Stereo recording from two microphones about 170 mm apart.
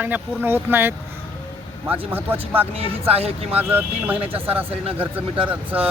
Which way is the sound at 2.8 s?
35° right (ahead or behind).